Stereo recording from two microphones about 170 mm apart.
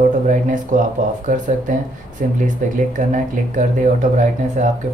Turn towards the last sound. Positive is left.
turn(degrees=-50)  # may be behind; listen again after turning